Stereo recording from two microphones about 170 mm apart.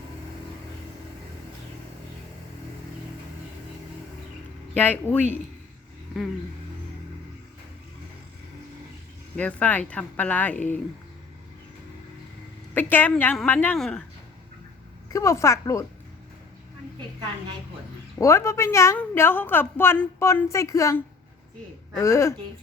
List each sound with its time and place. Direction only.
4.7 s a woman's voice: 10° left (ahead or behind)
9.3 s a woman's voice: 10° left (ahead or behind)
12.7 s a woman's voice: 10° left (ahead or behind)
15.1 s a woman's voice: 20° left (ahead or behind)
18.2 s a woman's voice: 15° left (ahead or behind)